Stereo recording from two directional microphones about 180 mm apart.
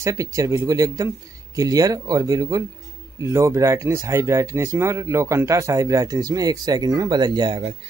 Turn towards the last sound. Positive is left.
turn(degrees=-25)  # may be behind; listen again after turning